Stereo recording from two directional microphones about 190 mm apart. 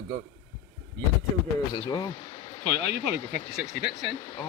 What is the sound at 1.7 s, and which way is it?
Speech, 20° left (ahead or behind).